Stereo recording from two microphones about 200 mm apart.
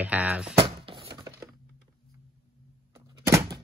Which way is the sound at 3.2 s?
15° right (ahead or behind).